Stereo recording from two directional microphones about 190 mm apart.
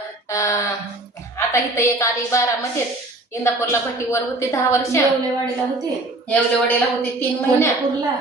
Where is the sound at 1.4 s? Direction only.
15° left (ahead or behind).